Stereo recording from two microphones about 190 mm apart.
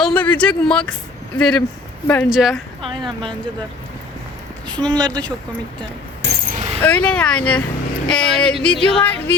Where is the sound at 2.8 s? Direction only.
25° right (ahead or behind).